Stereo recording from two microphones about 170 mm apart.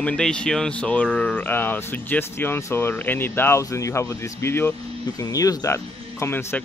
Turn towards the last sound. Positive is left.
turn(degrees=15)  # may be behind; listen again after turning